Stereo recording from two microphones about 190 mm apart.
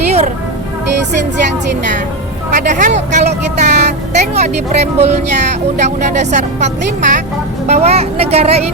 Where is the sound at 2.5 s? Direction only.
40° right (ahead or behind).